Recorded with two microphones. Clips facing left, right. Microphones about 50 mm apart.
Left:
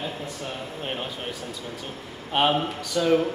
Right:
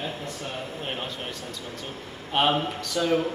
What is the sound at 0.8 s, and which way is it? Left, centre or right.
Speech, centre.